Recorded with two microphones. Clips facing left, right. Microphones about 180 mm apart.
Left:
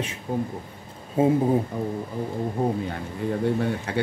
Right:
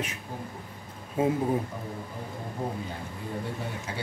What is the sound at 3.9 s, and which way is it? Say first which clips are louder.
Speech: left 10 dB; 65° left (ahead or behind).